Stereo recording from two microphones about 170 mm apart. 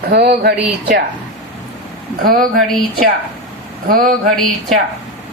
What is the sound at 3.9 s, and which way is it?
Speech, 60° right (ahead or behind).